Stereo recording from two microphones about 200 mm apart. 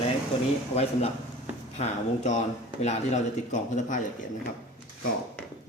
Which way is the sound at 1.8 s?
35° left (ahead or behind).